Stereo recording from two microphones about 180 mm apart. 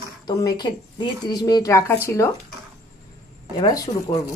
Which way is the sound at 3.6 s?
20° left (ahead or behind).